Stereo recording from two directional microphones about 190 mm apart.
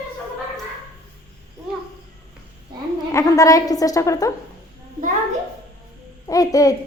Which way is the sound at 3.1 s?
15° left (ahead or behind).